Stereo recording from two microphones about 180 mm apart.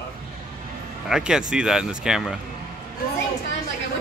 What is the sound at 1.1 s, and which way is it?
Speech, 5° right (ahead or behind).